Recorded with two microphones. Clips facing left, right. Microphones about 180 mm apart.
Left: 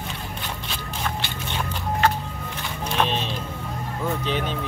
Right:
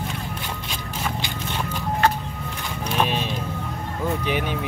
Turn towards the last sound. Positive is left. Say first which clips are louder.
# right 1 dB
turn(degrees=-10)  # may be behind; listen again after turning